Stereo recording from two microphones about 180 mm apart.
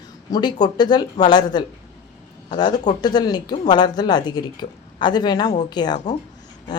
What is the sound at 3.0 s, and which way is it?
A woman's voice, 25° left (ahead or behind).